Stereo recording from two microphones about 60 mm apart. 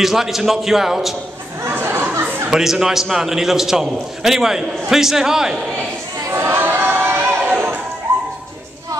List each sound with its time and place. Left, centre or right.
0.0 s a man's voice: centre
1.7 s chatter: right
2.2 s a sound: right
2.5 s a man's voice: centre
6.2 s choir: right